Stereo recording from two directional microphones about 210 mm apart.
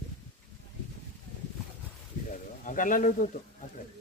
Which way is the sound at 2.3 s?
40° left (ahead or behind).